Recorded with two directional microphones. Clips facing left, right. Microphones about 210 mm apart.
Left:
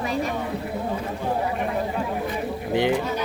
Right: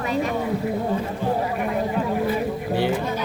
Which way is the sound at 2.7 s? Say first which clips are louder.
Left 2 dB; 15° left (ahead or behind).